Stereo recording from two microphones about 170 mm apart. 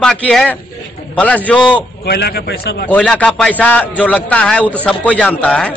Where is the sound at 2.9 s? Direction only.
5° left (ahead or behind).